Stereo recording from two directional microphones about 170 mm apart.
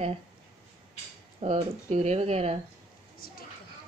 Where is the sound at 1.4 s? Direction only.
40° right (ahead or behind).